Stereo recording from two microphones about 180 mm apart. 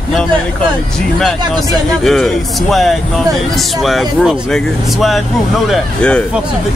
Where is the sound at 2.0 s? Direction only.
Centre (ahead or behind).